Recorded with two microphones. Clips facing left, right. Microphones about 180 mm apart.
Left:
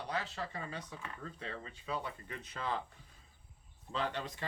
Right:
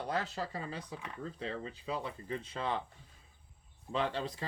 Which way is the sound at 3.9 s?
25° right (ahead or behind).